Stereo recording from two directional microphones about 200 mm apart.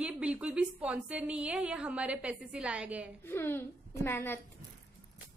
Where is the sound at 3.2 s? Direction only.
10° left (ahead or behind).